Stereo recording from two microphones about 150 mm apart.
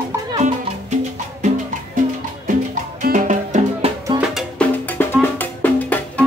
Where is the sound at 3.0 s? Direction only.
60° right (ahead or behind).